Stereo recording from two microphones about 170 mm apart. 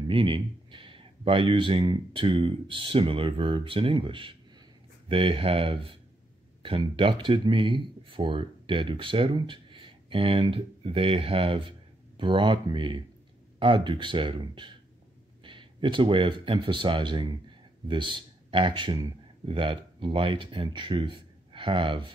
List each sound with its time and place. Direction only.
0.1 s a man's voice: 30° right (ahead or behind)